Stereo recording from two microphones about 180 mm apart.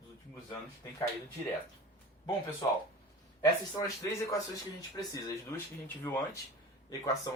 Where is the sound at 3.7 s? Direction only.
15° left (ahead or behind).